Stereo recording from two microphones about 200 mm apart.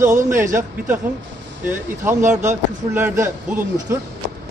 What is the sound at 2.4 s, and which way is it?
Speech, 10° right (ahead or behind).